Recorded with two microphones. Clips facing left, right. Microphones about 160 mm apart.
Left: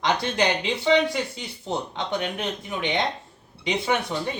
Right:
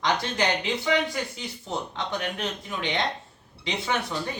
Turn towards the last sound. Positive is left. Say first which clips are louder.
# left 3 dB
turn(degrees=15)  # may be behind; listen again after turning